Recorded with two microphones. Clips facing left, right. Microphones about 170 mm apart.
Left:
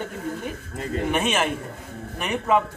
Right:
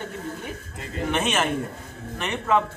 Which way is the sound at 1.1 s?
10° left (ahead or behind).